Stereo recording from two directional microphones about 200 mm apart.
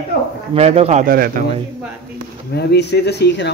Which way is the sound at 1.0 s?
45° right (ahead or behind).